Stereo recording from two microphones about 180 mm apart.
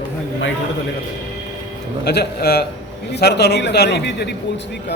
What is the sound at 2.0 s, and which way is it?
A man's voice, 65° left (ahead or behind).